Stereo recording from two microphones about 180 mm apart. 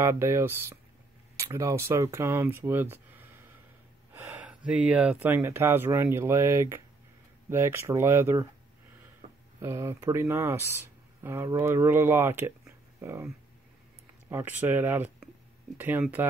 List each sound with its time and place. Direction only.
0.0 s speech: 15° right (ahead or behind)
9.6 s speech: 15° right (ahead or behind)
14.3 s speech: 10° right (ahead or behind)